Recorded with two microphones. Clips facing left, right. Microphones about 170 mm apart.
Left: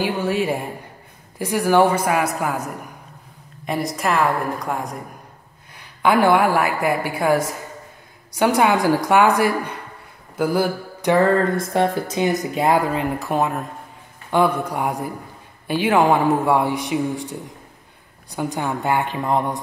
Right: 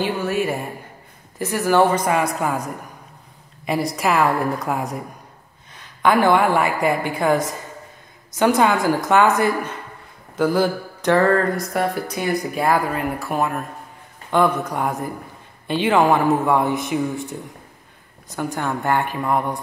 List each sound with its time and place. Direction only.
0.0 s a woman's voice: 15° left (ahead or behind)
3.6 s a woman's voice: centre (ahead or behind)
5.8 s a woman's voice: 10° left (ahead or behind)
10.3 s mantra: 10° left (ahead or behind)
11.5 s a woman's voice: 25° left (ahead or behind)